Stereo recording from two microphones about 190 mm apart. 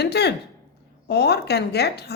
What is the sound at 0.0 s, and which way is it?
A woman's voice, 60° left (ahead or behind).